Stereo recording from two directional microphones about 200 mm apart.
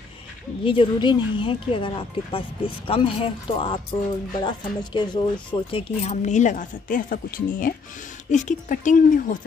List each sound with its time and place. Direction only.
0.7 s speech: 25° left (ahead or behind); by 9.4 s 40° left (ahead or behind)